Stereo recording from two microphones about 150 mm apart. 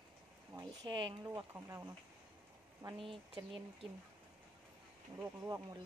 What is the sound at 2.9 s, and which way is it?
Speech, 35° right (ahead or behind).